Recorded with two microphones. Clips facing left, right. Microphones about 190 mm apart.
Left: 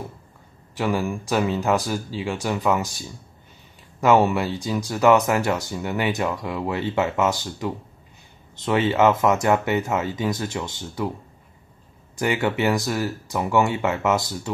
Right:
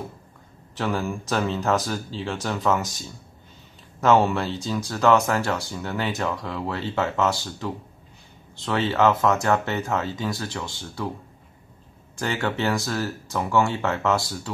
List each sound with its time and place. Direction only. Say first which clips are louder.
0.7 s speech: left 3 dB; 15° left (ahead or behind)
12.2 s speech: left 4 dB; 15° left (ahead or behind)